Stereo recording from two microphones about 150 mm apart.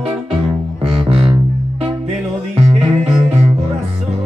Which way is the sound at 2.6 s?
40° right (ahead or behind).